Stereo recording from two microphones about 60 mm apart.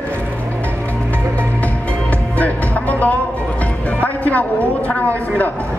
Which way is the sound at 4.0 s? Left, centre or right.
Left.